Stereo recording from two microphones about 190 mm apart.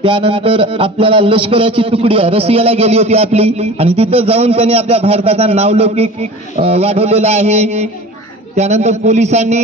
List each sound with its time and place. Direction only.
0.0 s a man's voice: 25° right (ahead or behind)